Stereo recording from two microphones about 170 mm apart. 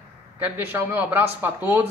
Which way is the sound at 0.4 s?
10° right (ahead or behind).